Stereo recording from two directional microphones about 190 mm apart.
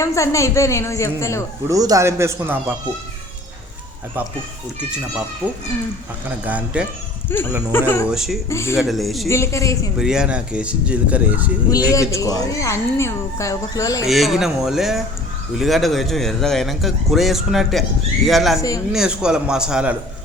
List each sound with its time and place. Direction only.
0.0 s speech: 15° left (ahead or behind)
1.6 s speech: 20° right (ahead or behind)
6.4 s speech: 10° right (ahead or behind)
7.3 s speech: 10° left (ahead or behind)
8.0 s a man's voice: centre (ahead or behind)
8.4 s speech: 15° left (ahead or behind)
8.8 s a man's voice: centre (ahead or behind)
9.3 s speech: 15° left (ahead or behind)
10.0 s a man's voice: 5° right (ahead or behind)
11.7 s speech: 15° left (ahead or behind)
14.1 s a man's voice: centre (ahead or behind)